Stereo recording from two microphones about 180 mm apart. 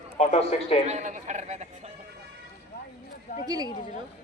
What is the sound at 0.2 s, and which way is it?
Speech, 35° left (ahead or behind).